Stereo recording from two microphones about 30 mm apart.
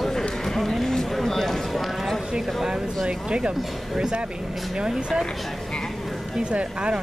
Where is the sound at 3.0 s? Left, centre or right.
Right.